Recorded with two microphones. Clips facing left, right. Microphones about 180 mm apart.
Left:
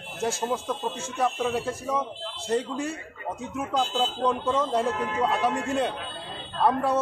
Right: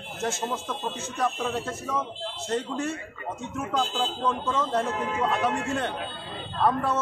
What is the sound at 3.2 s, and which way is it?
Speech, 15° left (ahead or behind).